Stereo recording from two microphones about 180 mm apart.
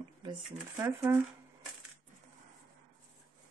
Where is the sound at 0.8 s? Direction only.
15° right (ahead or behind).